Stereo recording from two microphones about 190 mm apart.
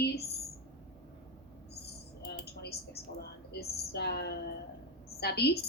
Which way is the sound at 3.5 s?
60° left (ahead or behind).